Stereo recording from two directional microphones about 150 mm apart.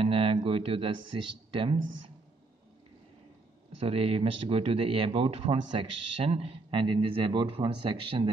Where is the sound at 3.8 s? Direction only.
40° right (ahead or behind).